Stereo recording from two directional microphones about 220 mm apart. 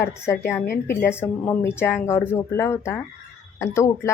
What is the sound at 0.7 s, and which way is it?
Speech, 40° left (ahead or behind).